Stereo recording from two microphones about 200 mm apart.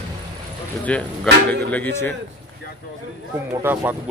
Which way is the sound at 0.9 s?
5° left (ahead or behind).